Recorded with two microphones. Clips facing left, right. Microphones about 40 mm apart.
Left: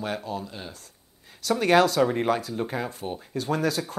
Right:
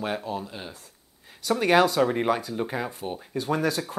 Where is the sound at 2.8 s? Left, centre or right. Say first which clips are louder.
Even; centre.